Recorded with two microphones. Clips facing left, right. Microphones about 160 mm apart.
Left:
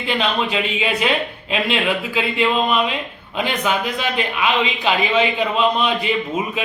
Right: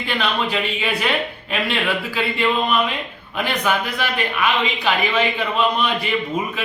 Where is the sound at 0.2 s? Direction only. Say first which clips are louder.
Even; 20° left (ahead or behind).